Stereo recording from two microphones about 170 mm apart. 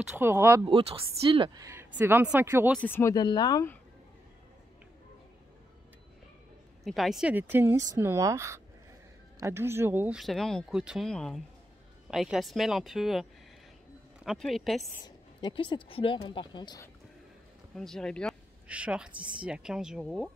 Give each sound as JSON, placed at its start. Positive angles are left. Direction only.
{"t": 0.0, "sound": "speech", "side_deg": -15}
{"t": 0.7, "sound": "speech", "side_deg": -30}
{"t": 2.8, "sound": "speech", "side_deg": 15}
{"t": 6.8, "sound": "speech", "side_deg": 0}
{"t": 15.0, "sound": "speech", "side_deg": 25}
{"t": 17.7, "sound": "speech", "side_deg": 5}
{"t": 18.7, "sound": "speech", "side_deg": -5}